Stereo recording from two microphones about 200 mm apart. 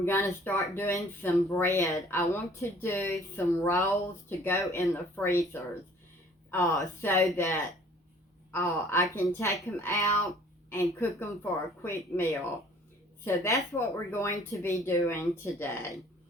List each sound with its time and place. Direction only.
0.0 s speech: 10° left (ahead or behind)
10.2 s a sound: 15° left (ahead or behind)
11.0 s speech: 15° left (ahead or behind)